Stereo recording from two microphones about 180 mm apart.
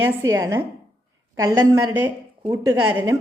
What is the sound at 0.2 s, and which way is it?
A woman's voice, 15° right (ahead or behind).